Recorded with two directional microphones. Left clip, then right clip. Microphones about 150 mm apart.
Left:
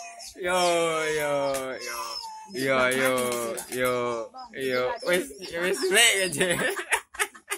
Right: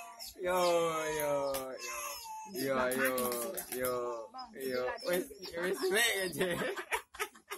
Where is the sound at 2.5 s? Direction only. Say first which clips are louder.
Left 10 dB; 20° left (ahead or behind).